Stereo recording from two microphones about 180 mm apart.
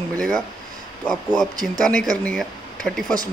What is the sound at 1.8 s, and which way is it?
Speech, 5° left (ahead or behind).